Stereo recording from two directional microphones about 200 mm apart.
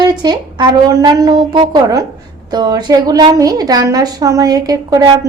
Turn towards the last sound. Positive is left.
turn(degrees=-20)  # may be behind; listen again after turning